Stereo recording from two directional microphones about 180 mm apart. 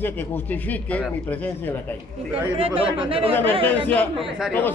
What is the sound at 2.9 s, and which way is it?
Speech, 30° right (ahead or behind).